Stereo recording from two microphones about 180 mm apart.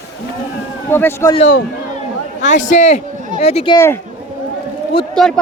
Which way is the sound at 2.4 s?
45° left (ahead or behind).